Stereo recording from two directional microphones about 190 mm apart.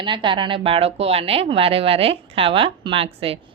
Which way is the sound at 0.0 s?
25° right (ahead or behind).